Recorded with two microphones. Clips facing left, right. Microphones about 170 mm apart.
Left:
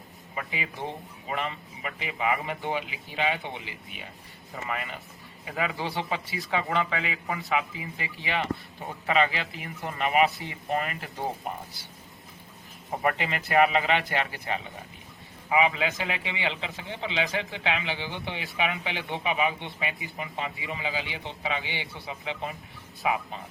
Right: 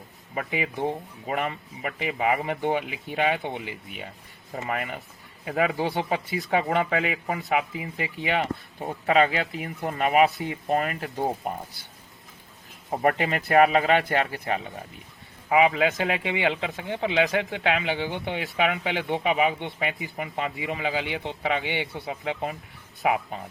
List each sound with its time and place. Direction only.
0.3 s a man's voice: 55° right (ahead or behind)
12.9 s a man's voice: 45° right (ahead or behind)